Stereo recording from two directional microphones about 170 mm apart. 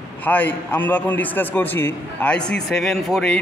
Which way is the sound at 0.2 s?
10° left (ahead or behind).